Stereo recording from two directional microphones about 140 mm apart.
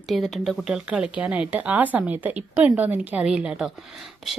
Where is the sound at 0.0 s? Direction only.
Centre (ahead or behind).